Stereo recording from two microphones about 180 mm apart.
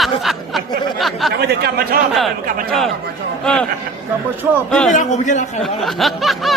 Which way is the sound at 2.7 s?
Centre (ahead or behind).